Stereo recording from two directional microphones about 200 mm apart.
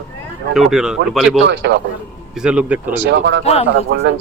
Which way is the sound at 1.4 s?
60° right (ahead or behind).